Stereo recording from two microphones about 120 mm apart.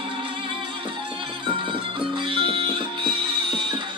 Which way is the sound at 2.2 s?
45° right (ahead or behind).